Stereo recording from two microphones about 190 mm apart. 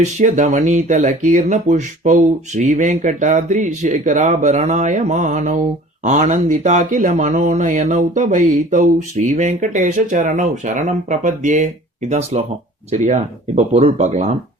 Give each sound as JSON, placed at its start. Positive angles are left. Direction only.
{"t": 0.0, "sound": "speech", "side_deg": -40}